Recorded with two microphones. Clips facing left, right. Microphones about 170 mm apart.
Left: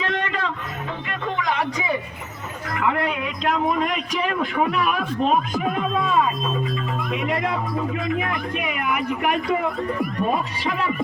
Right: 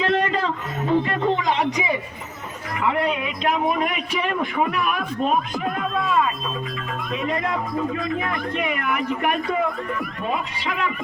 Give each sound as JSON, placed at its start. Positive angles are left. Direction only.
{"t": 0.0, "sound": "a sound", "side_deg": -35}
{"t": 2.8, "sound": "speech", "side_deg": -5}
{"t": 7.1, "sound": "speech", "side_deg": 10}